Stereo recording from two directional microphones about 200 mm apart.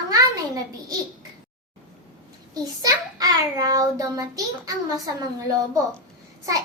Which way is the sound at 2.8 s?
20° right (ahead or behind).